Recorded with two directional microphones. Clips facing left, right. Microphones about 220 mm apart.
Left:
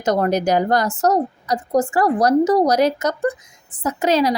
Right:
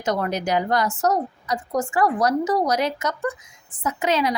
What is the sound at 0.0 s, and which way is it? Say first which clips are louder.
A woman's voice: left 6 dB; 40° left (ahead or behind).